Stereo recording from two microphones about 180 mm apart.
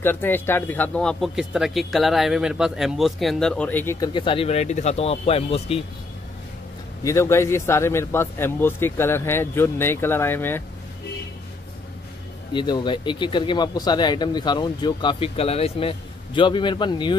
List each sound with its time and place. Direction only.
0.0 s a man's voice: 10° left (ahead or behind)
4.1 s speech: 30° left (ahead or behind)
7.0 s a man's voice: 15° left (ahead or behind)
12.5 s speech: 25° left (ahead or behind)